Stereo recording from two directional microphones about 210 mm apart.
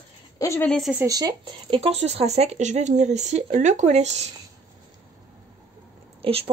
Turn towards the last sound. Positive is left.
turn(degrees=-25)  # may be behind; listen again after turning